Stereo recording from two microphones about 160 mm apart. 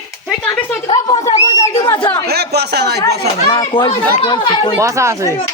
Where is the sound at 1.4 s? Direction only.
20° left (ahead or behind).